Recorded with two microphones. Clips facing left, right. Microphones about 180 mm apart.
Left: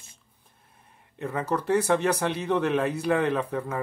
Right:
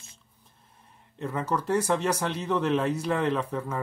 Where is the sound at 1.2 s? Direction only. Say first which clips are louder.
Left 1 dB; 60° left (ahead or behind).